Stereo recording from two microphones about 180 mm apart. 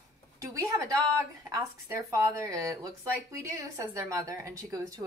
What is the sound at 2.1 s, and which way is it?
A woman's voice, 20° right (ahead or behind).